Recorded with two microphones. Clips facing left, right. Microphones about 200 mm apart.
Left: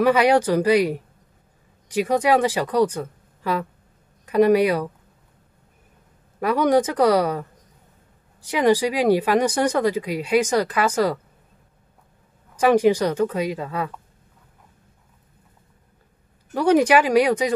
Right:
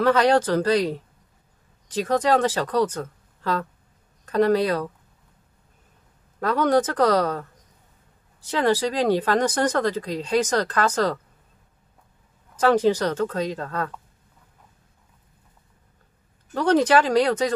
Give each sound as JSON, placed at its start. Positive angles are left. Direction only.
{"t": 0.0, "sound": "speech", "side_deg": 10}
{"t": 6.4, "sound": "speech", "side_deg": 10}
{"t": 12.5, "sound": "speech", "side_deg": 10}
{"t": 16.5, "sound": "speech", "side_deg": 10}